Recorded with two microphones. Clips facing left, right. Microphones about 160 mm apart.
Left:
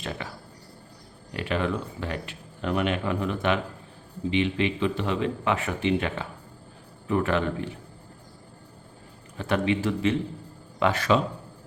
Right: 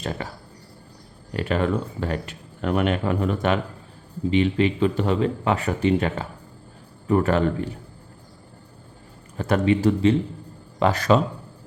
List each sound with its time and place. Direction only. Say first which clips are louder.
0.0 s speech: right 4 dB; 40° right (ahead or behind)
9.4 s speech: right 5 dB; 40° right (ahead or behind)